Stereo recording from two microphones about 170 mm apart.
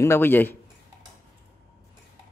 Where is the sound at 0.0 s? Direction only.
15° left (ahead or behind).